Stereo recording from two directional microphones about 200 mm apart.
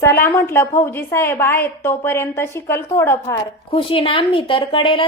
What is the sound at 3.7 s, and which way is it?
A woman's voice, 25° left (ahead or behind).